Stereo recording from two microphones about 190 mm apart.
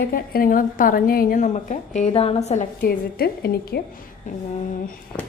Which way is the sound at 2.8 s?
55° left (ahead or behind).